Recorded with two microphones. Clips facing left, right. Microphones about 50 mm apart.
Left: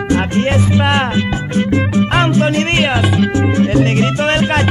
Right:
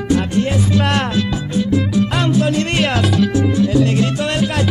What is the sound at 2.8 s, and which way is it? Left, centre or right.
Music, left.